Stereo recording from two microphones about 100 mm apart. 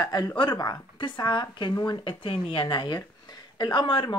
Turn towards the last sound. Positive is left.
turn(degrees=50)  # may be behind; listen again after turning